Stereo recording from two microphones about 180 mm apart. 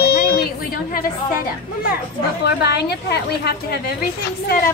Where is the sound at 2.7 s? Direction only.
65° left (ahead or behind).